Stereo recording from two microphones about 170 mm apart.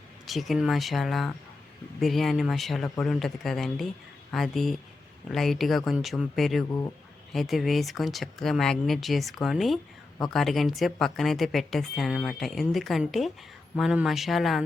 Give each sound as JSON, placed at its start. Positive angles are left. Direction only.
{"t": 0.3, "sound": "speech", "side_deg": 0}